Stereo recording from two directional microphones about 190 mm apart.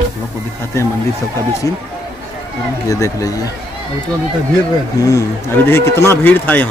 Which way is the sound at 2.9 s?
15° left (ahead or behind).